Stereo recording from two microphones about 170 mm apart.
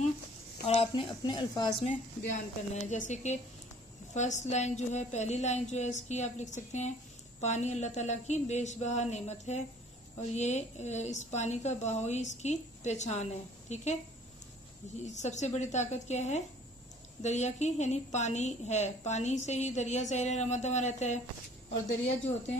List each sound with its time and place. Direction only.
0.7 s a woman's voice: 35° left (ahead or behind)
2.7 s a woman's voice: 45° left (ahead or behind)
15.0 s a woman's voice: 45° left (ahead or behind)